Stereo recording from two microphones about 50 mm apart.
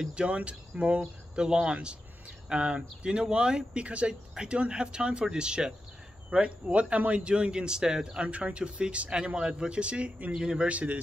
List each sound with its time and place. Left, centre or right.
0.1 s a man's voice: right